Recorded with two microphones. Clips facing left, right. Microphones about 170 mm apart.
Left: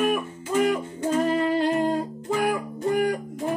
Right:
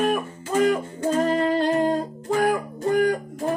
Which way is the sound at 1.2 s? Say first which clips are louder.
Right 2 dB; 40° right (ahead or behind).